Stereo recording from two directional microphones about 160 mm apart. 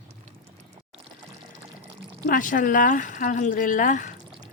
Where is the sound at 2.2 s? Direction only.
60° left (ahead or behind).